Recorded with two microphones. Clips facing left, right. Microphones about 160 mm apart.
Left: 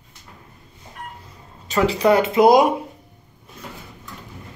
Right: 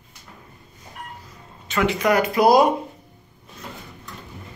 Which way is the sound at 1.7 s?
35° left (ahead or behind).